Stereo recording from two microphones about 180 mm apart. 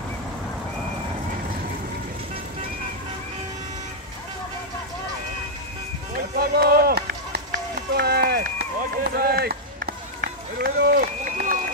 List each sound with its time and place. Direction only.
6.1 s run: 55° right (ahead or behind)